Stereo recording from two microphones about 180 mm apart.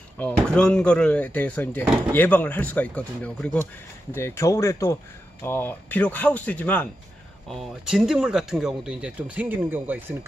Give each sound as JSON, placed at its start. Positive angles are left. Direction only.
{"t": 0.2, "sound": "speech", "side_deg": 5}